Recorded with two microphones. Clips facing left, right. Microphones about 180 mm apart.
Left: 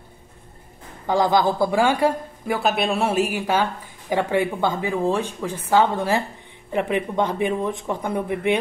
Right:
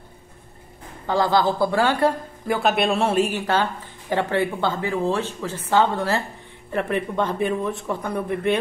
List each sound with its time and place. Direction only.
1.0 s speech: 15° left (ahead or behind)
2.4 s speech: centre (ahead or behind)